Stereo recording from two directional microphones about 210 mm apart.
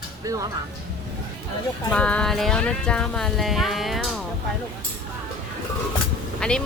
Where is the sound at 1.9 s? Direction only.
5° left (ahead or behind).